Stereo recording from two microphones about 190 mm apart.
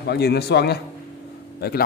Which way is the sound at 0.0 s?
60° left (ahead or behind).